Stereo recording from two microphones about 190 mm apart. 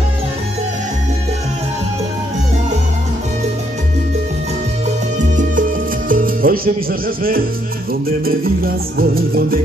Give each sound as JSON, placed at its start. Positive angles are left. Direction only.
{"t": 5.3, "sound": "music", "side_deg": -45}